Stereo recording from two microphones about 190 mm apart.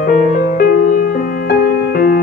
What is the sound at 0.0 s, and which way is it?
Music, 45° left (ahead or behind).